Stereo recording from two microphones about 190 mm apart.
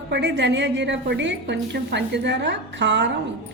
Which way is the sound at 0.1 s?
65° right (ahead or behind).